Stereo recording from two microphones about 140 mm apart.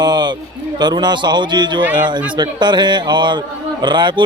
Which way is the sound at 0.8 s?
30° right (ahead or behind).